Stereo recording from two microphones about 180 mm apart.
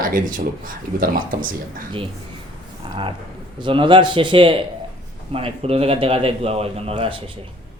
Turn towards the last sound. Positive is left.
turn(degrees=-30)  # may be behind; listen again after turning